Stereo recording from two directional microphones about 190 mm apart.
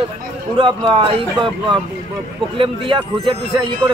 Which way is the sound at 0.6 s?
25° right (ahead or behind).